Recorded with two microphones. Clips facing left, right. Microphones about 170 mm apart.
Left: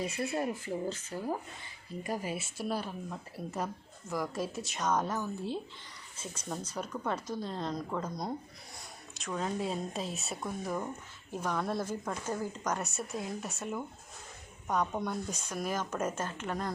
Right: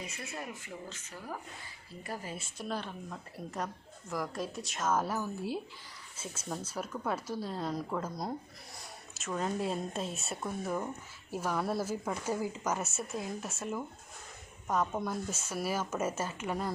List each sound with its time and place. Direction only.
0.0 s speech: 35° left (ahead or behind)
2.0 s a woman's voice: 15° left (ahead or behind); by 16.7 s 10° right (ahead or behind)